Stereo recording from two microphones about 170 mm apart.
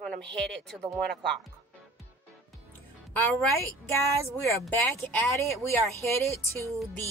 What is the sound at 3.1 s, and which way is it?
Speech, 10° left (ahead or behind).